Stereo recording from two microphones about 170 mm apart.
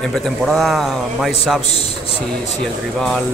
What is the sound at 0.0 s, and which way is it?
A man's voice, centre (ahead or behind).